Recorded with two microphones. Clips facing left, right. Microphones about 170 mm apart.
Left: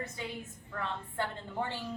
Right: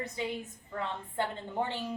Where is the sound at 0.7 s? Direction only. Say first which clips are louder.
Right 1 dB; 20° right (ahead or behind).